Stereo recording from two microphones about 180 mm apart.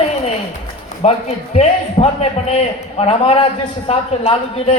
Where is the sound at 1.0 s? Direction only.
35° left (ahead or behind).